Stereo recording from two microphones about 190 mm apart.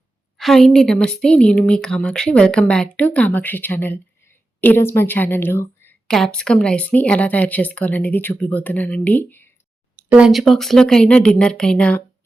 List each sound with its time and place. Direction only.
0.3 s a woman's voice: centre (ahead or behind)
9.9 s a woman's voice: 5° right (ahead or behind)